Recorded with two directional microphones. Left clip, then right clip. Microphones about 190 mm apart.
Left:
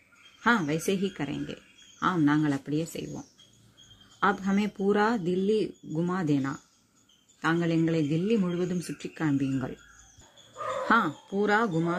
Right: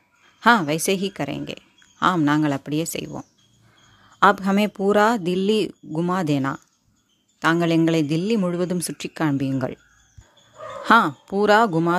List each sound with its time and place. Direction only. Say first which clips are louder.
0.4 s speech: right 9 dB; 40° right (ahead or behind)
4.2 s speech: right 10 dB; 40° right (ahead or behind)
10.9 s speech: right 10 dB; 35° right (ahead or behind)